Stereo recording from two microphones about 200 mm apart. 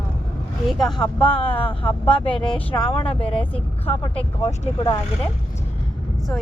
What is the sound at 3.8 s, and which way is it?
Speech, 30° left (ahead or behind).